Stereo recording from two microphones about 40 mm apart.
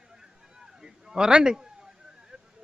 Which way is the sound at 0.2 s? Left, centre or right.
Centre.